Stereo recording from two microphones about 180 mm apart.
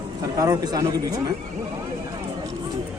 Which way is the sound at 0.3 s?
20° right (ahead or behind).